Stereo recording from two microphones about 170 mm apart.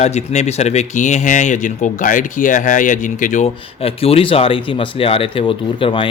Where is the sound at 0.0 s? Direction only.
40° left (ahead or behind).